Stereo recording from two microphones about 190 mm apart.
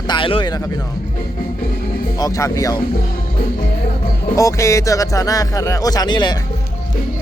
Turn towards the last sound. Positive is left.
turn(degrees=20)  # may be behind; listen again after turning